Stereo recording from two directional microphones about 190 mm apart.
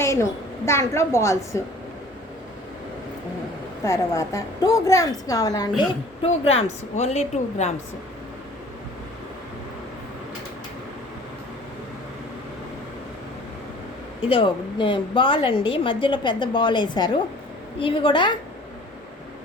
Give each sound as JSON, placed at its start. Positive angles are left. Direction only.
{"t": 0.0, "sound": "a woman's voice", "side_deg": 15}
{"t": 3.8, "sound": "a woman's voice", "side_deg": 15}
{"t": 5.9, "sound": "a woman's voice", "side_deg": 30}
{"t": 14.2, "sound": "a woman's voice", "side_deg": 30}